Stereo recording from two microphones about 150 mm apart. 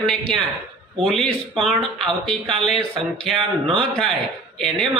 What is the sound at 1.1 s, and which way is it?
A man's voice, centre (ahead or behind).